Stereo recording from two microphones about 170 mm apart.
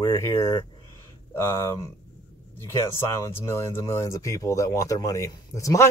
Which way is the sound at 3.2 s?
15° left (ahead or behind).